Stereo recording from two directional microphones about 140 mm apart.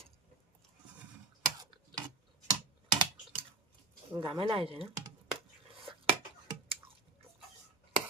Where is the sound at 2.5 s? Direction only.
30° right (ahead or behind).